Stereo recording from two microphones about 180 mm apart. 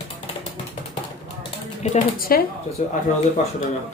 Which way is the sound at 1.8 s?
45° left (ahead or behind).